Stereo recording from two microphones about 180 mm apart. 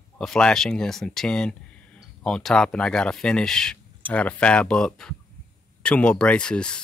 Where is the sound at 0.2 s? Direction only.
5° left (ahead or behind).